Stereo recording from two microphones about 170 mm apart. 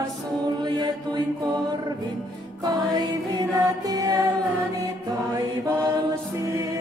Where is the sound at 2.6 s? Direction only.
25° right (ahead or behind).